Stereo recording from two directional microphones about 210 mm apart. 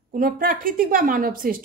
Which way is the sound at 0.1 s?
40° right (ahead or behind).